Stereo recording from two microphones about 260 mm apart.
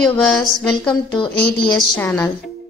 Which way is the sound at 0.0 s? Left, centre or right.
Centre.